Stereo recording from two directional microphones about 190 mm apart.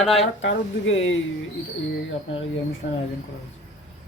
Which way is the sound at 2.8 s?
65° left (ahead or behind).